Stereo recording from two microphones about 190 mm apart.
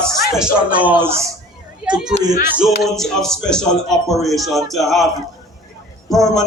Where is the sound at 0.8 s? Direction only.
10° right (ahead or behind).